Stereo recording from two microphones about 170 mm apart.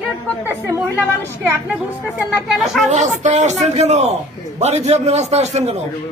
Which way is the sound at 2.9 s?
45° right (ahead or behind).